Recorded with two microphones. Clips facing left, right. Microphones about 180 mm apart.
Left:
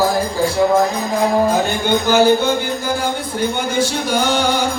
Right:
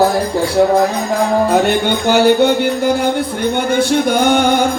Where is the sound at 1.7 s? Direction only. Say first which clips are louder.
Right 3 dB; 70° right (ahead or behind).